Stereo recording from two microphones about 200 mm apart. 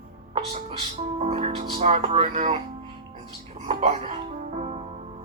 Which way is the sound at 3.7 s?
35° right (ahead or behind).